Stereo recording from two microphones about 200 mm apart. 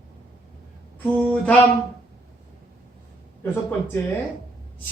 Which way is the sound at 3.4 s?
10° left (ahead or behind).